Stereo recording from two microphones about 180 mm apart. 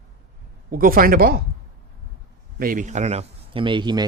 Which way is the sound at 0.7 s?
55° right (ahead or behind).